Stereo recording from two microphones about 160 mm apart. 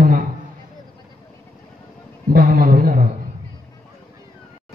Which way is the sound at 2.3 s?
65° right (ahead or behind).